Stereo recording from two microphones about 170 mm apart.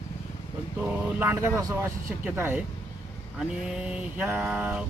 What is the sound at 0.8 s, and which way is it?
Speech, 10° right (ahead or behind).